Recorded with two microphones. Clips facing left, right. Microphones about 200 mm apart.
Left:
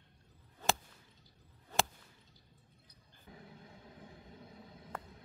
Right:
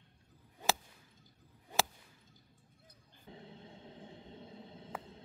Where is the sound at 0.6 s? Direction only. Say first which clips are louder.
Even; 10° right (ahead or behind).